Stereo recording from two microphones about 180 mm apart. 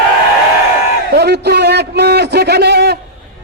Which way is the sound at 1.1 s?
65° right (ahead or behind).